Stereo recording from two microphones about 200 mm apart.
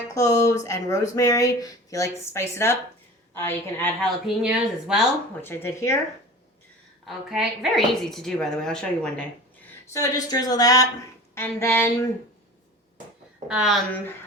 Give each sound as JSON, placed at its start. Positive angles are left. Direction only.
{"t": 0.1, "sound": "speech", "side_deg": 15}
{"t": 4.4, "sound": "speech", "side_deg": -5}
{"t": 5.4, "sound": "speech", "side_deg": 10}
{"t": 7.0, "sound": "speech", "side_deg": 0}
{"t": 9.9, "sound": "speech", "side_deg": 15}
{"t": 13.5, "sound": "speech", "side_deg": -5}